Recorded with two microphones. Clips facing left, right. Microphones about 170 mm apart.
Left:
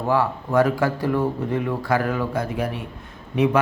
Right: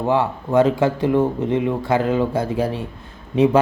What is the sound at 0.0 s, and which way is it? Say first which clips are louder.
Speech: right 2 dB; 25° right (ahead or behind).